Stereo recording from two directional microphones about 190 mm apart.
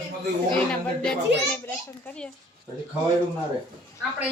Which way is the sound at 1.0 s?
5° left (ahead or behind).